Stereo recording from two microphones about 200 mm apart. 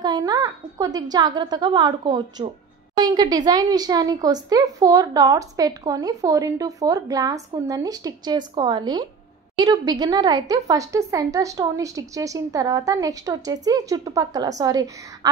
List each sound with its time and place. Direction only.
0.0 s a woman's voice: 20° right (ahead or behind)